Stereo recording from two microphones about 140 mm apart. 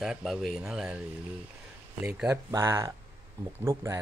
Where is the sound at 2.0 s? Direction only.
5° right (ahead or behind).